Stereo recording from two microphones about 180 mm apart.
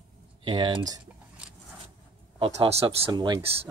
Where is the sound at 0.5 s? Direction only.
25° right (ahead or behind).